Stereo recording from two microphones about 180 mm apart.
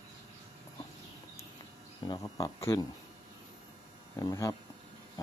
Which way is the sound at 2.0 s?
20° left (ahead or behind).